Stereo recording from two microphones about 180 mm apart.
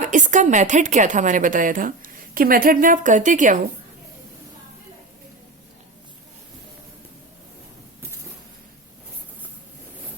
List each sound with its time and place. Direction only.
0.0 s a woman's voice: 45° right (ahead or behind)